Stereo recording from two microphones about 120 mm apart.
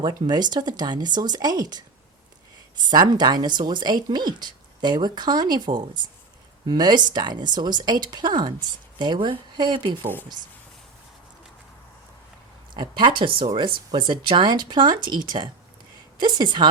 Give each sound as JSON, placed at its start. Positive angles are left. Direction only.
{"t": 0.0, "sound": "speech", "side_deg": -35}
{"t": 12.7, "sound": "speech", "side_deg": -40}